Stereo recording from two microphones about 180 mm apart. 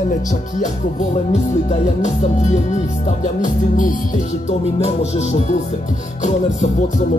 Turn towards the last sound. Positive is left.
turn(degrees=40)  # may be behind; listen again after turning